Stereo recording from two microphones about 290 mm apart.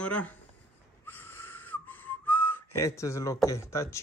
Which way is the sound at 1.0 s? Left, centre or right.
Centre.